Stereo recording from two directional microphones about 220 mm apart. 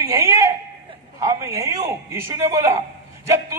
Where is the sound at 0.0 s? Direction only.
15° right (ahead or behind).